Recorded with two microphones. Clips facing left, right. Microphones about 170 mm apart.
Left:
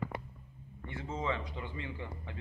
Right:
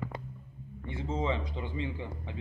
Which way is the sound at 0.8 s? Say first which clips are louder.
Right 4 dB; 25° right (ahead or behind).